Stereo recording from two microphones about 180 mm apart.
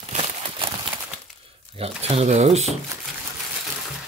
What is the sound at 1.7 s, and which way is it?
Speech, 30° right (ahead or behind).